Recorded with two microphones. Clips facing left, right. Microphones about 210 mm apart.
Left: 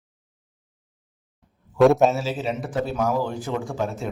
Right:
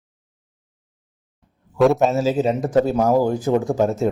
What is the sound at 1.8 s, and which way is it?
Speech, centre (ahead or behind).